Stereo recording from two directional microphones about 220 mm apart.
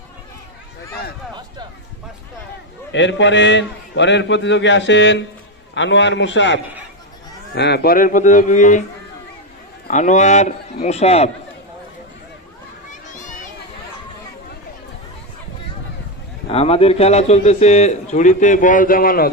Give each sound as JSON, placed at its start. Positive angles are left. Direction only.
{"t": 2.9, "sound": "a man's voice", "side_deg": 55}
{"t": 9.8, "sound": "a man's voice", "side_deg": 35}
{"t": 12.9, "sound": "children playing", "side_deg": 35}
{"t": 16.5, "sound": "a man's voice", "side_deg": 25}